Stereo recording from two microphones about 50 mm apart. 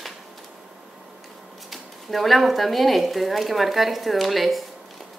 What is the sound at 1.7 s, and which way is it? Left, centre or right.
Speech, centre.